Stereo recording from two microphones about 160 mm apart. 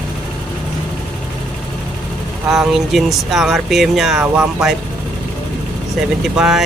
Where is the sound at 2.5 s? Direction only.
Centre (ahead or behind).